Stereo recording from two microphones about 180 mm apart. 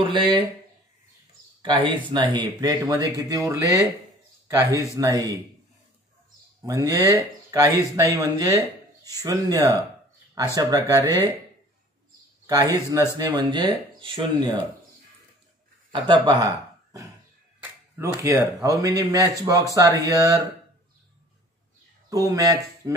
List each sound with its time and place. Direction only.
0.1 s speech: 25° right (ahead or behind)
1.6 s speech: 25° right (ahead or behind)
6.6 s speech: 20° right (ahead or behind)
12.4 s speech: 20° right (ahead or behind)
15.9 s speech: 25° right (ahead or behind)
17.6 s speech: 15° right (ahead or behind)
22.1 s speech: 20° right (ahead or behind)